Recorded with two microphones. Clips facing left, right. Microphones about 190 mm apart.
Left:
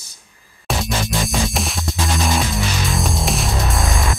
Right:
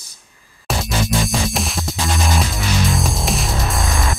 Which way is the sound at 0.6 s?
Centre (ahead or behind).